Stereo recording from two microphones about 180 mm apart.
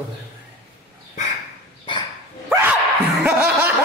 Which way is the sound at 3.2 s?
5° right (ahead or behind).